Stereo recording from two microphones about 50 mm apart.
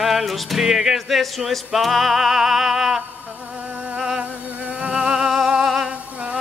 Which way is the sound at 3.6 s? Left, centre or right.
Right.